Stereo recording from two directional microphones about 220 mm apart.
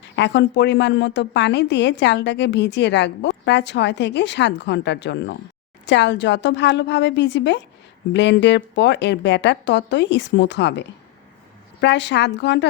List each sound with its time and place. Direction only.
0.2 s a woman's voice: 50° left (ahead or behind)